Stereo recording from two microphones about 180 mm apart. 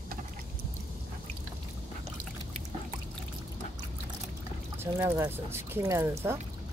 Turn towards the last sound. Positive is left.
turn(degrees=-15)  # may be behind; listen again after turning